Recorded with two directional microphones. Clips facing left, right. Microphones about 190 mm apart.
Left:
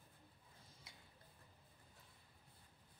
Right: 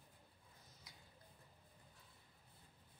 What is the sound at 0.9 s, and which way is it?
Tick-tock, 25° left (ahead or behind).